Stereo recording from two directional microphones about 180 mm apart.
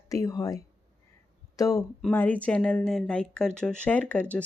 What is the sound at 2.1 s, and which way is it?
Speech, 10° left (ahead or behind).